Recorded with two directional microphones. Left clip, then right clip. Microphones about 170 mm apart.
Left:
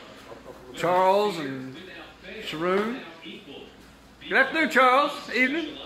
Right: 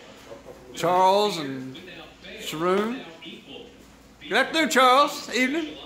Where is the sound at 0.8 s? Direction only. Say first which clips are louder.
Right 2 dB; 15° right (ahead or behind).